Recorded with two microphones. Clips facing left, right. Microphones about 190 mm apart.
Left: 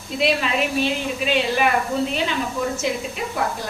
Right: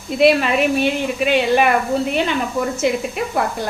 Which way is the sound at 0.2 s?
60° right (ahead or behind).